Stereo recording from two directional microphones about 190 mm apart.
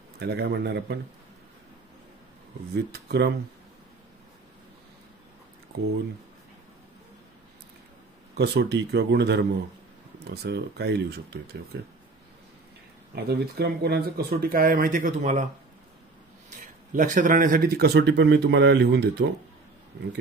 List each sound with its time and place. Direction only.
0.2 s speech: 60° right (ahead or behind)
2.7 s speech: 60° right (ahead or behind)
8.4 s speech: 60° right (ahead or behind)
13.1 s speech: 60° right (ahead or behind)
16.4 s speech: 45° right (ahead or behind); by 19.2 s 60° right (ahead or behind)